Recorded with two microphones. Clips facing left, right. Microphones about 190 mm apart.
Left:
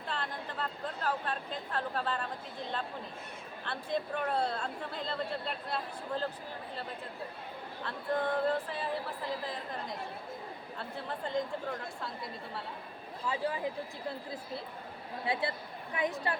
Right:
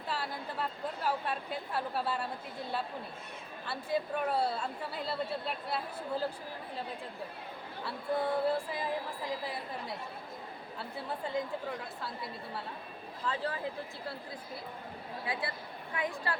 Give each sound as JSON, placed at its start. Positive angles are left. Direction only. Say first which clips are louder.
{"t": 0.1, "sound": "a woman's voice", "louder": "right 1 dB", "side_deg": -10}
{"t": 7.9, "sound": "a woman's voice", "louder": "even", "side_deg": -10}
{"t": 13.2, "sound": "speech", "louder": "left 1 dB", "side_deg": 10}
{"t": 15.3, "sound": "speech", "louder": "left 4 dB", "side_deg": 25}